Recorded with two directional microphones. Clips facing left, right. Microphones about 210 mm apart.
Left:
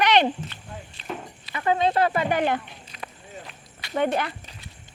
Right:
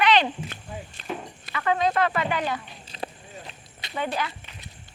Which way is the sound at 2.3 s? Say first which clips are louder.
Left 5 dB; 55° left (ahead or behind).